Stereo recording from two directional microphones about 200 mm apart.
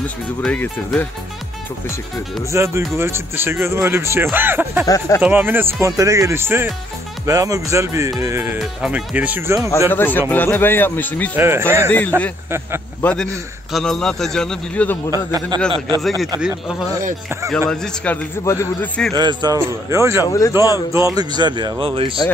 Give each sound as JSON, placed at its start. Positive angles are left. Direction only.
{"t": 0.0, "sound": "a man's voice", "side_deg": 5}
{"t": 2.5, "sound": "speech", "side_deg": -15}
{"t": 4.8, "sound": "a man's voice", "side_deg": 15}
{"t": 5.2, "sound": "speech", "side_deg": -10}
{"t": 9.8, "sound": "a man's voice", "side_deg": 10}
{"t": 11.3, "sound": "speech", "side_deg": -10}
{"t": 13.0, "sound": "a man's voice", "side_deg": 5}
{"t": 15.5, "sound": "speech", "side_deg": -20}
{"t": 16.3, "sound": "a man's voice", "side_deg": -5}
{"t": 17.6, "sound": "a man's voice", "side_deg": 10}
{"t": 19.1, "sound": "speech", "side_deg": -20}
{"t": 20.2, "sound": "a man's voice", "side_deg": 15}
{"t": 20.7, "sound": "speech", "side_deg": -15}